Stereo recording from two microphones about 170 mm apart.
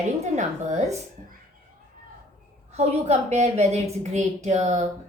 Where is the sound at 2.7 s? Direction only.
40° right (ahead or behind).